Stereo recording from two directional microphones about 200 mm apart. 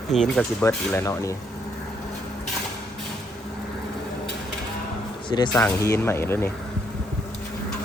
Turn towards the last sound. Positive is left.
turn(degrees=10)  # may be behind; listen again after turning